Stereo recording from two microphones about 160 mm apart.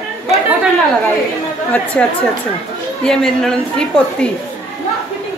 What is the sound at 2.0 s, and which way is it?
A woman's voice, 10° left (ahead or behind).